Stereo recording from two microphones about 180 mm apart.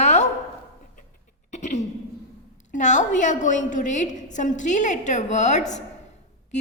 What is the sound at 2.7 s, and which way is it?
A woman's voice, 45° left (ahead or behind).